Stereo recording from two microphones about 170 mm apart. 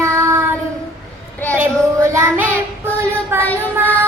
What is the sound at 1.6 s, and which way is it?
Child singing, 15° right (ahead or behind).